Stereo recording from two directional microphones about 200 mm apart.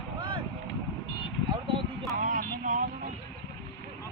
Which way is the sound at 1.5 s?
25° right (ahead or behind).